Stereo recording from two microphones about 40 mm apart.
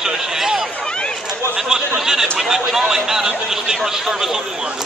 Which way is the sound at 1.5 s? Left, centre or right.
Centre.